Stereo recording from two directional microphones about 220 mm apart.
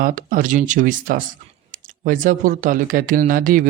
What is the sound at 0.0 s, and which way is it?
Speech, 35° right (ahead or behind).